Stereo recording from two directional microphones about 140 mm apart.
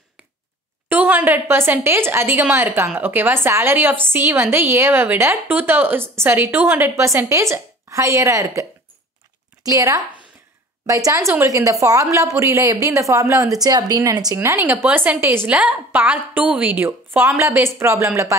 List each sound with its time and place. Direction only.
0.8 s a woman's voice: 15° right (ahead or behind)
9.7 s a woman's voice: 25° right (ahead or behind)